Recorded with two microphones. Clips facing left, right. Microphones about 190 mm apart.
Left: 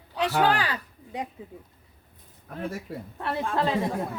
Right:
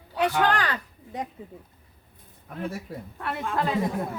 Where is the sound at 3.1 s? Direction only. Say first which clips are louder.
Left 1 dB; 30° left (ahead or behind).